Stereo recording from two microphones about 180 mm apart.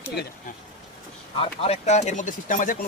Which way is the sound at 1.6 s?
35° left (ahead or behind).